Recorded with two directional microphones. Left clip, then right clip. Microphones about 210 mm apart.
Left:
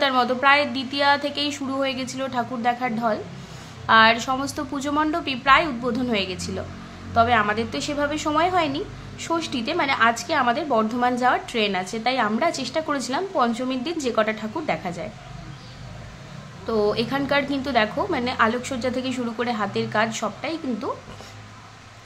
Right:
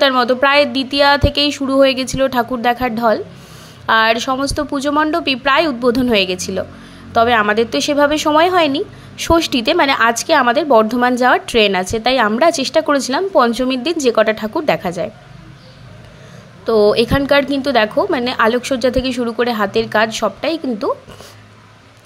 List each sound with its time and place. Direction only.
0.0 s a woman's voice: 30° right (ahead or behind)
16.6 s a woman's voice: 35° right (ahead or behind)